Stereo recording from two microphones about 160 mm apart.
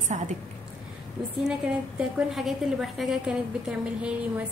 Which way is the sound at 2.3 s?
Centre (ahead or behind).